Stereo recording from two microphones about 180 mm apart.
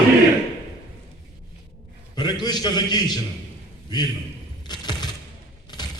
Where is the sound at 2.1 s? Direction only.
25° left (ahead or behind).